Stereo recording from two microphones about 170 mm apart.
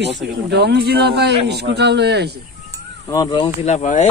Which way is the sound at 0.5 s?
75° right (ahead or behind).